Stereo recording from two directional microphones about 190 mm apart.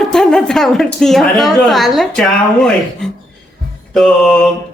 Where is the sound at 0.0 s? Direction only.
5° left (ahead or behind).